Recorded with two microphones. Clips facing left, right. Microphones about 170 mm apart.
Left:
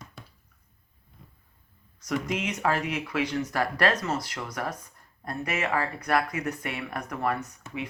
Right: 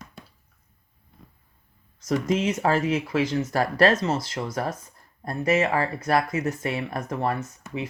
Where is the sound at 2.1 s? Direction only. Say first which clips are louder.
Right 6 dB; 30° right (ahead or behind).